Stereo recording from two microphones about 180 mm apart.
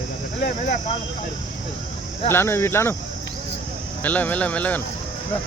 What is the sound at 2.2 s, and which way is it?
Speech, 15° left (ahead or behind).